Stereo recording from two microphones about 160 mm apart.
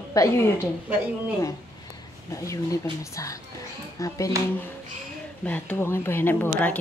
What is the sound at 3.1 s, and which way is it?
Speech, 20° left (ahead or behind).